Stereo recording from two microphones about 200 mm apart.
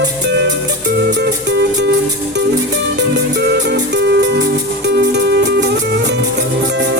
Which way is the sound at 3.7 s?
55° right (ahead or behind).